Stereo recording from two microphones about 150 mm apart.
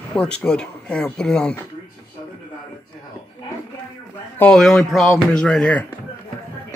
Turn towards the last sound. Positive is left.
turn(degrees=5)  # may be behind; listen again after turning